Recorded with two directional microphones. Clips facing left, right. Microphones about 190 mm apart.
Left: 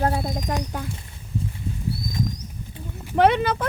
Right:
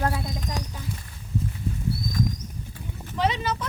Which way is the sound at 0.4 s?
55° left (ahead or behind).